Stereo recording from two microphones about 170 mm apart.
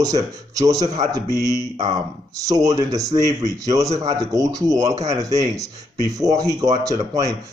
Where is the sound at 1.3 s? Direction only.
20° left (ahead or behind).